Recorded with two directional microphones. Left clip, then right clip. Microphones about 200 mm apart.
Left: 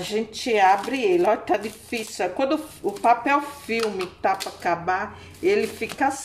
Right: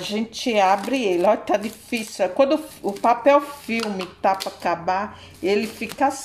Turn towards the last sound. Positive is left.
turn(degrees=-25)  # may be behind; listen again after turning